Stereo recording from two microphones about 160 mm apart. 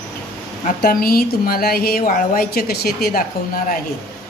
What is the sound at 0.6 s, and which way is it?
Speech, 65° left (ahead or behind).